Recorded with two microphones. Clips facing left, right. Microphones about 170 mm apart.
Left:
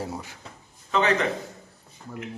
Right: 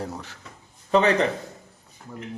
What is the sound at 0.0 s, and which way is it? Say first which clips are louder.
Speech: even; 10° left (ahead or behind).